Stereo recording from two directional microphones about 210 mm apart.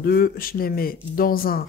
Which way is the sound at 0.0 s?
45° left (ahead or behind).